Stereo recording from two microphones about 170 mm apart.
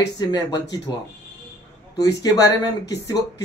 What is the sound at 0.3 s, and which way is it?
Speech, 25° left (ahead or behind).